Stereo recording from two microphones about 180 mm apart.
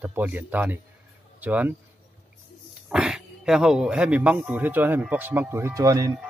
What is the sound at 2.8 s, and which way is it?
Speech, 5° right (ahead or behind).